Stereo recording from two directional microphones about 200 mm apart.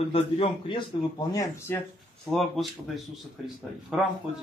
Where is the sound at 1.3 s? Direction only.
15° left (ahead or behind).